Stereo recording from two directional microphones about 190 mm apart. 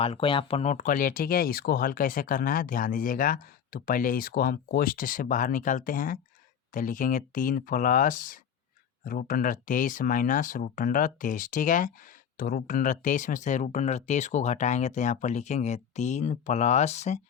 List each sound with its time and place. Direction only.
0.0 s speech: 30° left (ahead or behind)